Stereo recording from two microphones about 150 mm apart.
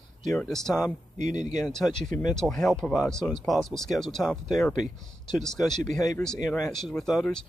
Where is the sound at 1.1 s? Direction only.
50° right (ahead or behind).